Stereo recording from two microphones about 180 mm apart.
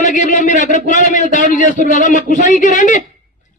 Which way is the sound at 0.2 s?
45° left (ahead or behind).